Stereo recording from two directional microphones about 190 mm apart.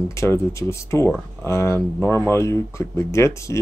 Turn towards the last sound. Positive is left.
turn(degrees=15)  # may be behind; listen again after turning